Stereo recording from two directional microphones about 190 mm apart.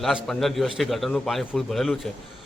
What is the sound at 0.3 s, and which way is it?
A man's voice, centre (ahead or behind).